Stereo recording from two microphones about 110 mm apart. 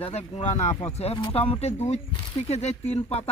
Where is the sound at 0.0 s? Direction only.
65° left (ahead or behind).